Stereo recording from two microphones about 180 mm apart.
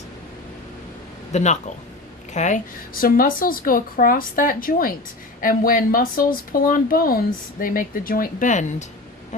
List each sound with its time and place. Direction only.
1.3 s a woman's voice: 40° left (ahead or behind)